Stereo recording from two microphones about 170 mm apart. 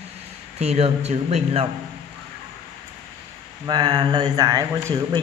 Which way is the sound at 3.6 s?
25° right (ahead or behind).